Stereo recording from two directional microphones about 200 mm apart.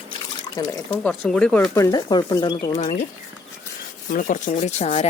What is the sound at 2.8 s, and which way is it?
Rub, 40° left (ahead or behind).